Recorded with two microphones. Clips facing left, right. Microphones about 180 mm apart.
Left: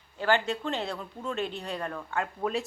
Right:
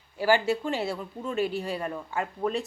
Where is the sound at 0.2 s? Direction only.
10° right (ahead or behind).